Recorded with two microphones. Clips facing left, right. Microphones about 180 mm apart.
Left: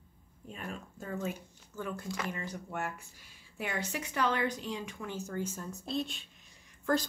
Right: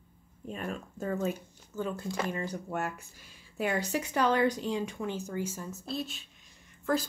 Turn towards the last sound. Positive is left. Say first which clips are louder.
# right 1 dB
turn(degrees=0)  # may be behind; listen again after turning